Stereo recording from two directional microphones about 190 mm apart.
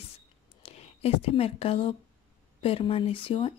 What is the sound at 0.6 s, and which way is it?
Speech, 30° left (ahead or behind).